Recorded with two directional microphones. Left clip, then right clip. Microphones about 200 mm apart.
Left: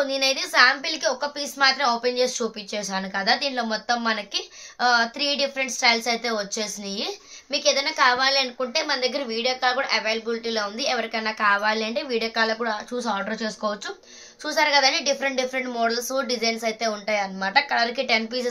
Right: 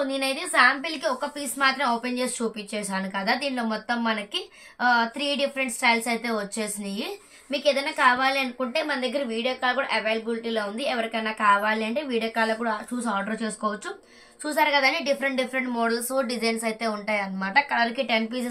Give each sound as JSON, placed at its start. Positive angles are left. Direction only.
{"t": 0.0, "sound": "a woman's voice", "side_deg": 45}